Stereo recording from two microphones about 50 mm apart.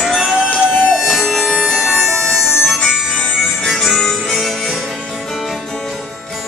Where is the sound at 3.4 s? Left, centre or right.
Centre.